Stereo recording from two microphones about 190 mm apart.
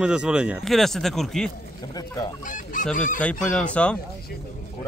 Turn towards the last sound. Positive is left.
turn(degrees=5)  # may be behind; listen again after turning